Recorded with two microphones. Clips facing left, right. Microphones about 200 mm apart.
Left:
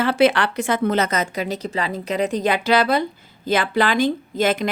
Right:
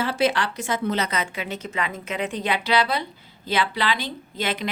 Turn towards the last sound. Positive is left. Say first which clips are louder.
# left 8 dB
turn(degrees=45)  # may be behind; listen again after turning